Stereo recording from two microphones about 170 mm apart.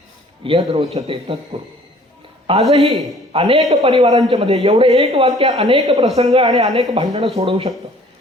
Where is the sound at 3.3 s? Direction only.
35° right (ahead or behind).